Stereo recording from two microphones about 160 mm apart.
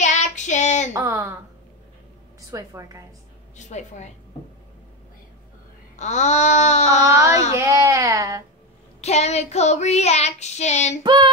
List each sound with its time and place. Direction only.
0.0 s child singing: 45° left (ahead or behind)
0.9 s speech: 15° right (ahead or behind)
2.5 s speech: 20° right (ahead or behind)
3.5 s child singing: 50° left (ahead or behind)
5.9 s child singing: 45° left (ahead or behind)
7.1 s speech: 15° right (ahead or behind)
9.0 s child singing: 45° left (ahead or behind)
11.0 s speech: 30° right (ahead or behind)